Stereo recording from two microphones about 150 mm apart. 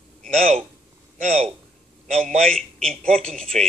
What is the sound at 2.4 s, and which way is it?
Speech, 5° left (ahead or behind).